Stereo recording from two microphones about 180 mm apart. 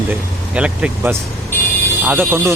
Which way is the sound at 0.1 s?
5° right (ahead or behind).